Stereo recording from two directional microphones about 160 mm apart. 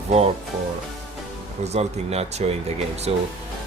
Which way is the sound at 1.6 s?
40° right (ahead or behind).